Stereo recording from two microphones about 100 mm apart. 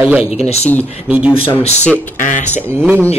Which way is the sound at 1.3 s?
70° left (ahead or behind).